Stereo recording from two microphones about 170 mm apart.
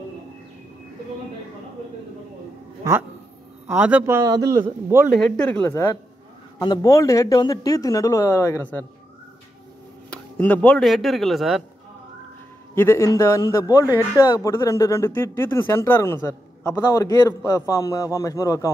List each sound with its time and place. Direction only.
3.6 s a man's voice: 10° right (ahead or behind)
5.1 s speech: 5° left (ahead or behind)
6.6 s speech: 20° left (ahead or behind)
10.0 s speech: 5° left (ahead or behind)
12.7 s speech: 15° left (ahead or behind)